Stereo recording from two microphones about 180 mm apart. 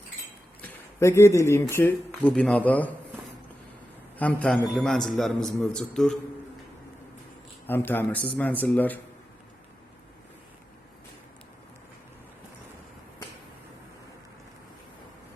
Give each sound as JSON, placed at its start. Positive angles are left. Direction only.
{"t": 0.6, "sound": "speech", "side_deg": 15}
{"t": 4.2, "sound": "a man's voice", "side_deg": 5}
{"t": 7.7, "sound": "a man's voice", "side_deg": 10}